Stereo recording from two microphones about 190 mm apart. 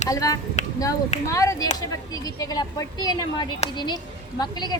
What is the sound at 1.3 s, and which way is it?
A woman's voice, 15° left (ahead or behind).